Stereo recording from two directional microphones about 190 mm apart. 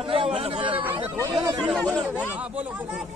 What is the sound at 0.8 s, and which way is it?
Speech, 15° right (ahead or behind).